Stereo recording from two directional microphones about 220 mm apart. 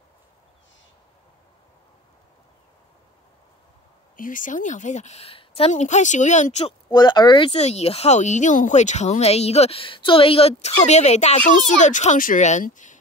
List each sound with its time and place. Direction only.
4.2 s a woman's voice: 35° left (ahead or behind)
6.9 s a woman's voice: 20° left (ahead or behind); by 13.0 s 35° left (ahead or behind)